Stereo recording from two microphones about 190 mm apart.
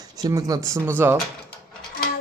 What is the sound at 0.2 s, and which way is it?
Speech, 20° right (ahead or behind).